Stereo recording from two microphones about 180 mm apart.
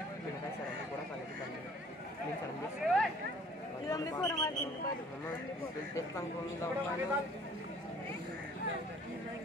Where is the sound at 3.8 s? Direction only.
20° left (ahead or behind).